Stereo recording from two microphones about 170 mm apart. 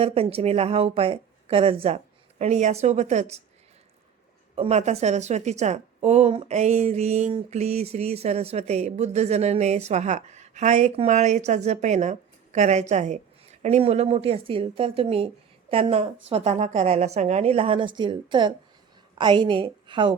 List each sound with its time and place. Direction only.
0.0 s a woman's voice: 35° right (ahead or behind)
4.5 s a woman's voice: 40° right (ahead or behind)